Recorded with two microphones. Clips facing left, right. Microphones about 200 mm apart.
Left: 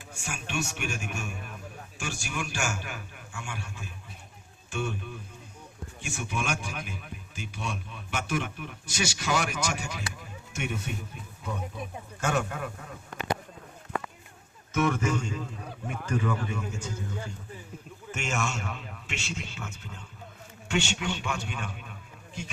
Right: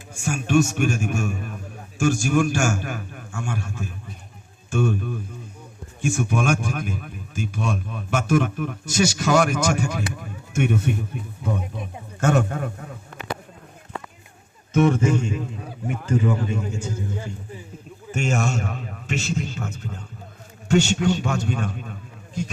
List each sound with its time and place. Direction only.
0.1 s a man's voice: 45° right (ahead or behind)
12.2 s a man's voice: 50° right (ahead or behind)
14.7 s a man's voice: 30° right (ahead or behind)
18.1 s a man's voice: 35° right (ahead or behind)